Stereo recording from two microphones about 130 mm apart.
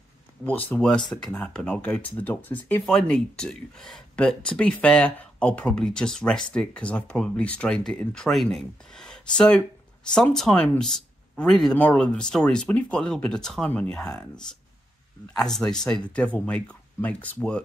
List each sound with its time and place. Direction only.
0.5 s speech: 15° left (ahead or behind)
15.3 s speech: 5° left (ahead or behind)